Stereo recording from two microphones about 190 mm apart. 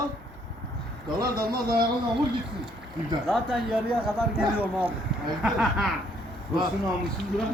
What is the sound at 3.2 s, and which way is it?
A man's voice, centre (ahead or behind).